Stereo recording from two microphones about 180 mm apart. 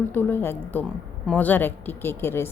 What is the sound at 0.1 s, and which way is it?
A woman's voice, 10° left (ahead or behind).